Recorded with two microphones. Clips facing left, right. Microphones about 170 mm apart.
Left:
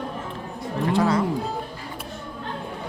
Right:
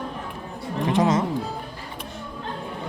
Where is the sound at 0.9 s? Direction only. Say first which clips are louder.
Right 1 dB; 20° right (ahead or behind).